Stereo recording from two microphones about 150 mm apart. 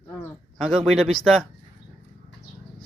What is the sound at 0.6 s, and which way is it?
Speech, centre (ahead or behind).